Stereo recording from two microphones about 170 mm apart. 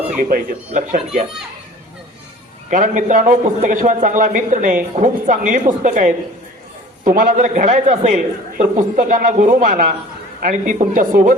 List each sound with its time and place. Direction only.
0.2 s a man's voice: 50° right (ahead or behind)
2.6 s a man's voice: 50° right (ahead or behind)